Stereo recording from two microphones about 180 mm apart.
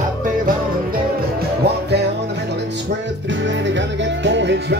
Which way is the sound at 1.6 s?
65° right (ahead or behind).